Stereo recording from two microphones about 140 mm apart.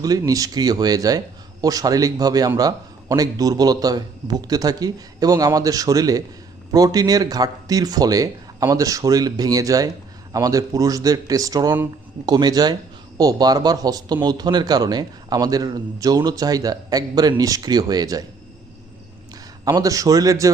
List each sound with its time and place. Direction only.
0.0 s speech: 25° right (ahead or behind)
19.6 s speech: 25° right (ahead or behind)